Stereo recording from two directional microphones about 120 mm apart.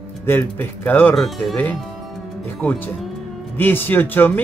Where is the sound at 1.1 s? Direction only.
Centre (ahead or behind).